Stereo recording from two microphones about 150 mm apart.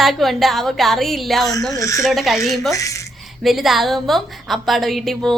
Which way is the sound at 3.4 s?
Centre (ahead or behind).